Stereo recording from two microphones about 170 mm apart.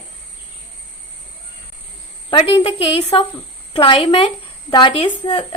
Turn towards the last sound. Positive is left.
turn(degrees=30)  # may be behind; listen again after turning